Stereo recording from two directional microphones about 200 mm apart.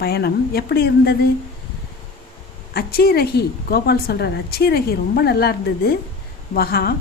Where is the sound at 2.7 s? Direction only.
50° left (ahead or behind).